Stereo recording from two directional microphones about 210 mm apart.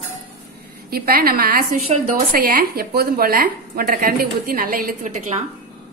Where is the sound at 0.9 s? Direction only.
45° right (ahead or behind).